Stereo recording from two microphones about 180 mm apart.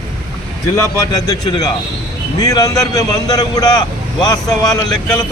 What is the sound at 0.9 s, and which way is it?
A man's voice, 20° left (ahead or behind).